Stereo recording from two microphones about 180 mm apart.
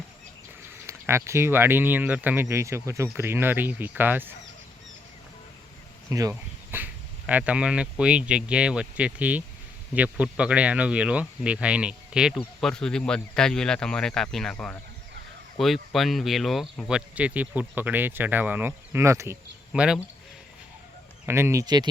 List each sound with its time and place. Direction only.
0.9 s speech: 15° right (ahead or behind)
6.1 s speech: 20° right (ahead or behind)
21.2 s speech: 15° right (ahead or behind)